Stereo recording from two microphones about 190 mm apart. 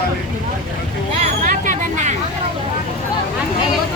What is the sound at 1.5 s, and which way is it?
Hubbub, 40° right (ahead or behind).